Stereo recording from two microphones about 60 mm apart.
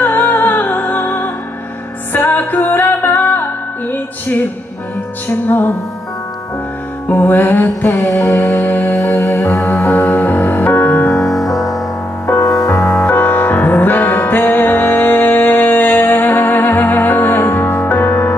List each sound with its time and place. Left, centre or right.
0.0 s music: left
5.5 s music: left
7.1 s music: left
8.1 s music: left
8.6 s music: left
9.2 s music: left
9.7 s music: left
11.2 s music: centre
12.3 s music: left